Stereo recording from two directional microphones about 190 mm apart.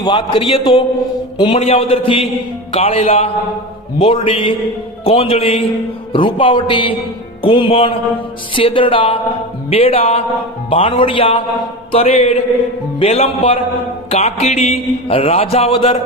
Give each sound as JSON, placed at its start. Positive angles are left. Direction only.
{"t": 0.0, "sound": "a man's voice", "side_deg": 25}